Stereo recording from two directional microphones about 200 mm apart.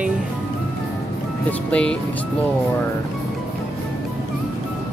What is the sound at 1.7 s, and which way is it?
Speech, 5° left (ahead or behind).